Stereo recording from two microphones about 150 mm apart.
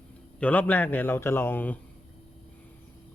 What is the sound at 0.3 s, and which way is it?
Speech, 10° left (ahead or behind).